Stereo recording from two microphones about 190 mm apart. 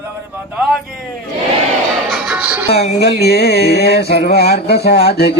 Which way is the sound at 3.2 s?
60° left (ahead or behind).